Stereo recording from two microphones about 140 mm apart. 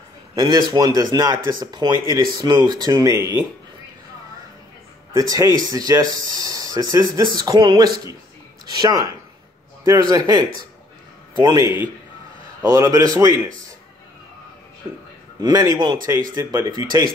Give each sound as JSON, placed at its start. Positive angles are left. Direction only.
{"t": 0.4, "sound": "speech", "side_deg": -30}
{"t": 5.3, "sound": "speech", "side_deg": -25}
{"t": 15.4, "sound": "speech", "side_deg": -25}